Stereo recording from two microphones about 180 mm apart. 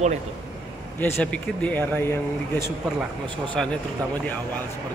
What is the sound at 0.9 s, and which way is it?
Speech, 10° left (ahead or behind).